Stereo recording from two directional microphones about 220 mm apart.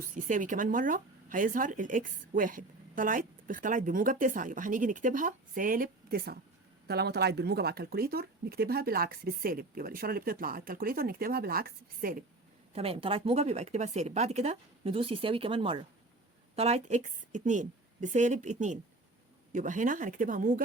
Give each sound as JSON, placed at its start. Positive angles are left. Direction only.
{"t": 0.1, "sound": "speech", "side_deg": -35}
{"t": 12.7, "sound": "a woman's voice", "side_deg": -25}